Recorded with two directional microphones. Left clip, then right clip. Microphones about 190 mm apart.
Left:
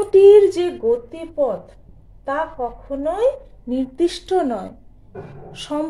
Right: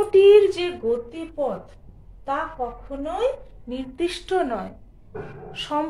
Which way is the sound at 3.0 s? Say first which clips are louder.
Left 6 dB; 60° left (ahead or behind).